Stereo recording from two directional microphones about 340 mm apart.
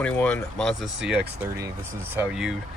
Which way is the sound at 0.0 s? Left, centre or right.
Centre.